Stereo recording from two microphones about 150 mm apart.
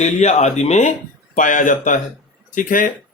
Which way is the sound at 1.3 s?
60° left (ahead or behind).